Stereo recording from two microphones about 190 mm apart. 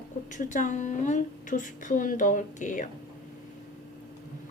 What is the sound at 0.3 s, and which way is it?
A woman's voice, 40° left (ahead or behind).